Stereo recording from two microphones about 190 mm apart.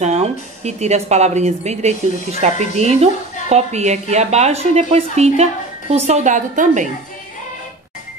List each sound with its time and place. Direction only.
0.0 s speech: 35° right (ahead or behind)